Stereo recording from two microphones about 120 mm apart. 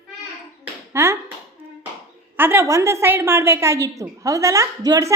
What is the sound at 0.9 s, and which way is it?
Speech, 20° right (ahead or behind).